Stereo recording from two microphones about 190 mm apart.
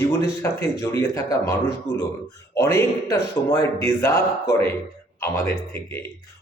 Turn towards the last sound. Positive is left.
turn(degrees=10)  # may be behind; listen again after turning